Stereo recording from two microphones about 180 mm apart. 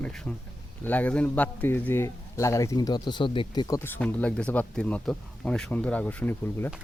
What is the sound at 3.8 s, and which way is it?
A man's voice, 10° left (ahead or behind).